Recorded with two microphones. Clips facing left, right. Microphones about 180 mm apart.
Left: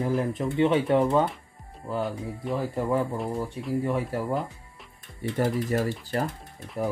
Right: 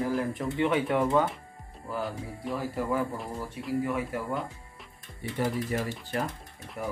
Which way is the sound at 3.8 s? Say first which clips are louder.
Left 3 dB; 30° left (ahead or behind).